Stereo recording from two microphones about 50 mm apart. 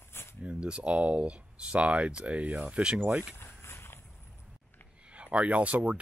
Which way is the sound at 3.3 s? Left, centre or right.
Left.